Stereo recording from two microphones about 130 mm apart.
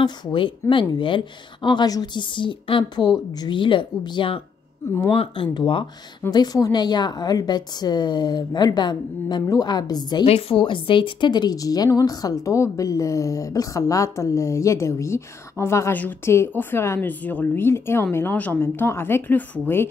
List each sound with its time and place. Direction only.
0.0 s a woman's voice: 35° left (ahead or behind)
10.2 s a woman's voice: 45° left (ahead or behind); by 19.9 s 15° left (ahead or behind)